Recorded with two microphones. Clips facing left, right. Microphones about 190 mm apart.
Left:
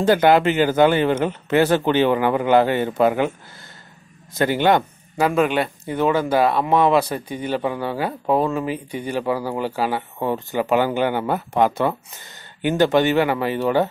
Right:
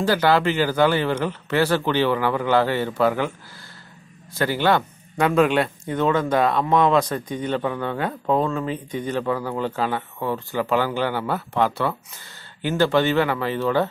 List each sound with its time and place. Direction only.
0.0 s speech: 20° left (ahead or behind)
5.1 s speech: 5° left (ahead or behind)